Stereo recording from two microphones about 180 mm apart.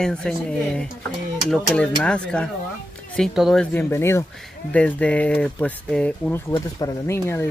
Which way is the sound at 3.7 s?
15° left (ahead or behind).